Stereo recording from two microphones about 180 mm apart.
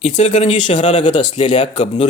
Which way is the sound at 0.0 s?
40° left (ahead or behind).